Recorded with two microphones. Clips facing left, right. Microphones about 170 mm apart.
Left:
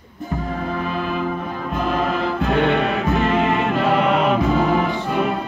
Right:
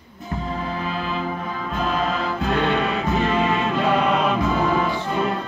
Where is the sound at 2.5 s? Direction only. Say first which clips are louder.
Left 3 dB; 20° left (ahead or behind).